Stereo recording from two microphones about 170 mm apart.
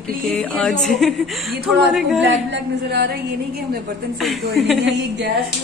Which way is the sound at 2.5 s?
75° right (ahead or behind).